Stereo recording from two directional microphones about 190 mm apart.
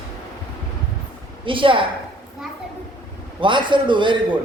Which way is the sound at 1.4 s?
25° right (ahead or behind).